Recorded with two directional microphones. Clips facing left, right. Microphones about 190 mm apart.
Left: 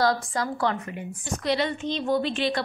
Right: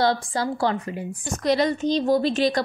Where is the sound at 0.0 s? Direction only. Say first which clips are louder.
Right 2 dB; 30° right (ahead or behind).